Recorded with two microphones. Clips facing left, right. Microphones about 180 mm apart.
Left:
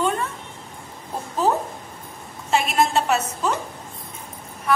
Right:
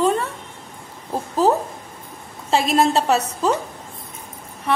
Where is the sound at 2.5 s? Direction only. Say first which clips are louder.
Right 3 dB; 35° right (ahead or behind).